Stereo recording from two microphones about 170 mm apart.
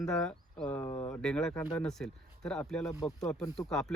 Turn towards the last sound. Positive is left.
turn(degrees=5)  # may be behind; listen again after turning